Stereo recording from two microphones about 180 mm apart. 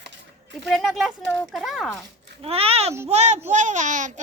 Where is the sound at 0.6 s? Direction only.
Centre (ahead or behind).